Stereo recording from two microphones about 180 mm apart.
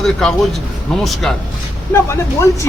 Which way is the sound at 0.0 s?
5° left (ahead or behind).